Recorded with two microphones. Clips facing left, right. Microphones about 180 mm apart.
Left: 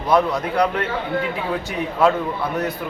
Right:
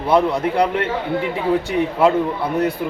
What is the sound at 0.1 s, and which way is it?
A man's voice, 25° right (ahead or behind).